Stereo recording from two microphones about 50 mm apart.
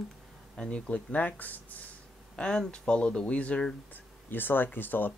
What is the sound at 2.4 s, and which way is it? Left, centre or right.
Speech, centre.